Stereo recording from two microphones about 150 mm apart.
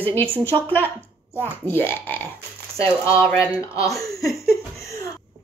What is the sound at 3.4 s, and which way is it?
Speech, 20° left (ahead or behind).